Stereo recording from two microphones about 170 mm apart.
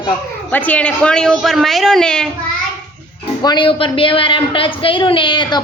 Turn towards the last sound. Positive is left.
turn(degrees=30)  # may be behind; listen again after turning